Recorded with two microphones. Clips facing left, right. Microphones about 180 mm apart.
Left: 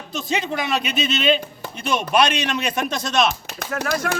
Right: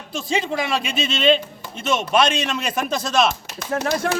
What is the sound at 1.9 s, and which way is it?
Speech, 25° right (ahead or behind).